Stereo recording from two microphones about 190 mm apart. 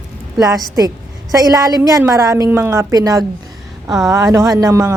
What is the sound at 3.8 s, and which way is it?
Speech, centre (ahead or behind).